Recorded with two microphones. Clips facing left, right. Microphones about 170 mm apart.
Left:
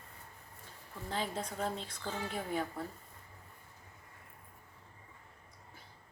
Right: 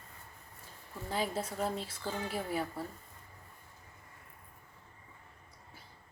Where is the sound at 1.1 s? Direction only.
10° right (ahead or behind).